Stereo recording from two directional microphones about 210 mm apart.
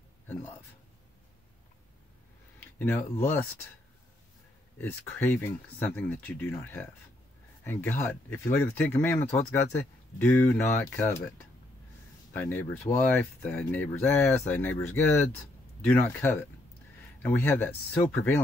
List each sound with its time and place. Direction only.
0.3 s a man's voice: 10° left (ahead or behind)
2.8 s speech: 10° left (ahead or behind)
4.7 s speech: 10° left (ahead or behind)